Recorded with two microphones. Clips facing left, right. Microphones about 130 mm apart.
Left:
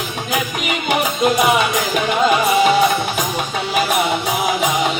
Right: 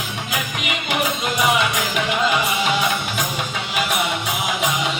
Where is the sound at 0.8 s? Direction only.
40° left (ahead or behind).